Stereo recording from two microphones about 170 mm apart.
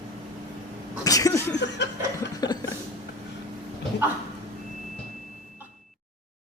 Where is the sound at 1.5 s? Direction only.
90° left.